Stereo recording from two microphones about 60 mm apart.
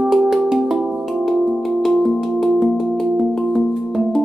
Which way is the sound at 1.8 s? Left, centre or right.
Centre.